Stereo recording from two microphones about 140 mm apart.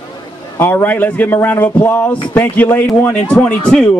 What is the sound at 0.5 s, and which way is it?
A man's voice, 15° left (ahead or behind).